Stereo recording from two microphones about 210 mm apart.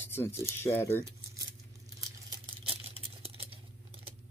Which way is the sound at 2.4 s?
25° right (ahead or behind).